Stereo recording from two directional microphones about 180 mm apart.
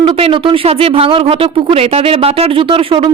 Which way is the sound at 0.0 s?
30° right (ahead or behind).